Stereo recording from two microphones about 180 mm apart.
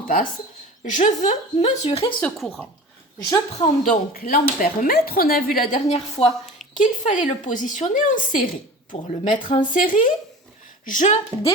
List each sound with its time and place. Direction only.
0.9 s a woman's voice: 40° left (ahead or behind)
2.2 s speech: 10° left (ahead or behind)
3.2 s a woman's voice: 20° left (ahead or behind)
3.8 s a woman's voice: 50° left (ahead or behind)
5.9 s a woman's voice: 30° left (ahead or behind)
6.3 s a sound: centre (ahead or behind)
6.7 s a woman's voice: 45° left (ahead or behind)